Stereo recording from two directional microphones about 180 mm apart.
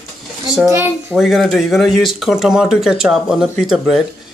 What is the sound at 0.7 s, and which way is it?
Speech, 15° right (ahead or behind).